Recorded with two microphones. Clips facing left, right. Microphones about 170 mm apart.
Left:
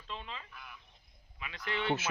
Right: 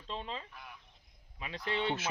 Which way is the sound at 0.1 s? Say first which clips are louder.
Right 4 dB; 30° right (ahead or behind).